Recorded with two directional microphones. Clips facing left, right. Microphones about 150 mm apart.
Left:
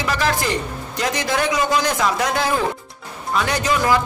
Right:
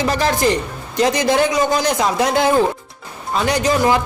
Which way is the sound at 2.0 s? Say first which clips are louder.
Right 4 dB; 25° right (ahead or behind).